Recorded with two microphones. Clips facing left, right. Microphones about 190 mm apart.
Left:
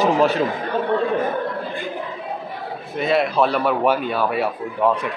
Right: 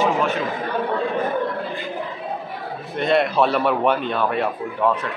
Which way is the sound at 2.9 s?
Centre (ahead or behind).